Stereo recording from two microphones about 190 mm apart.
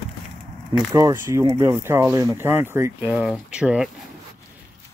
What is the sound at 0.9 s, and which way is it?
Speech, 15° right (ahead or behind).